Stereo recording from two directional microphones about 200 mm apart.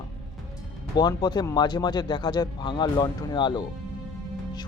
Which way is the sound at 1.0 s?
20° left (ahead or behind).